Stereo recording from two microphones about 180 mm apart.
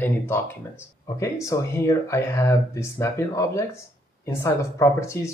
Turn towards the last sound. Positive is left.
turn(degrees=15)  # may be behind; listen again after turning